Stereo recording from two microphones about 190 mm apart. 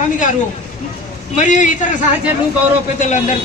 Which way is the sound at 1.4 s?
40° left (ahead or behind).